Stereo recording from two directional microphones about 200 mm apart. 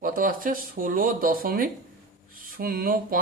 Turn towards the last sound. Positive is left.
turn(degrees=-45)  # may be behind; listen again after turning